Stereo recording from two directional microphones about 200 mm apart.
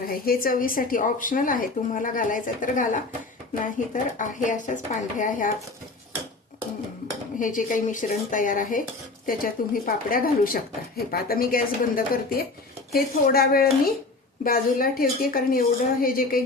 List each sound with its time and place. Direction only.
0.1 s speech: 45° left (ahead or behind)
7.3 s speech: 40° left (ahead or behind)